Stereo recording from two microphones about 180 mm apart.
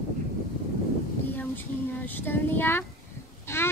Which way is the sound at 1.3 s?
10° left (ahead or behind).